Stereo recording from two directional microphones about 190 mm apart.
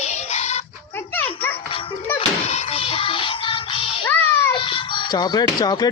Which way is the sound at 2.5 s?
35° left (ahead or behind).